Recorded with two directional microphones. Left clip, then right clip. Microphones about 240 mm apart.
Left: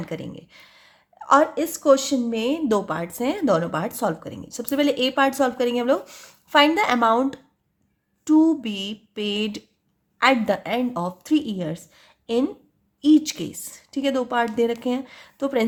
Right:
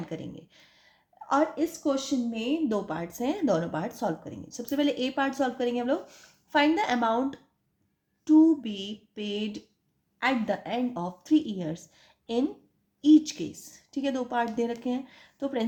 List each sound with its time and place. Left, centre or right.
0.0 s speech: left